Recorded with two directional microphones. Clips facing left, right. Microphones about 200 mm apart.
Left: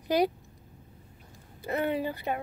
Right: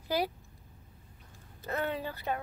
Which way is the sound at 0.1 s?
20° left (ahead or behind).